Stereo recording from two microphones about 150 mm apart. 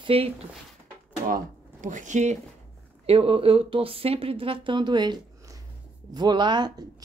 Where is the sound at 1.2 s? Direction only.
65° right (ahead or behind).